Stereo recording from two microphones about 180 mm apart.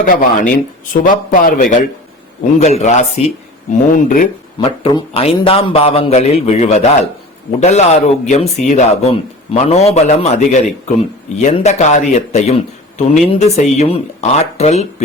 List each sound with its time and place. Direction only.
0.0 s a man's voice: 50° left (ahead or behind)
2.4 s a man's voice: 40° left (ahead or behind)
4.6 s speech: 25° left (ahead or behind)